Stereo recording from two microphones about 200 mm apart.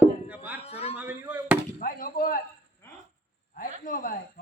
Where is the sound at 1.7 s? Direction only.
45° left (ahead or behind).